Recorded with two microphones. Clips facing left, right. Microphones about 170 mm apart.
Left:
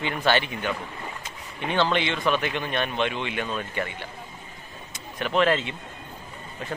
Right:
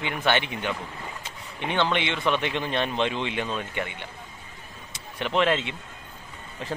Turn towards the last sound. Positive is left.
turn(degrees=-30)  # may be behind; listen again after turning